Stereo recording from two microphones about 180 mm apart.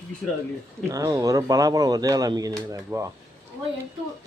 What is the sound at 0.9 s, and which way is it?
Speech, 15° right (ahead or behind).